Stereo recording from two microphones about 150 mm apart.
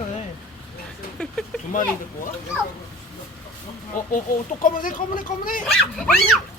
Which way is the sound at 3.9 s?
65° left (ahead or behind).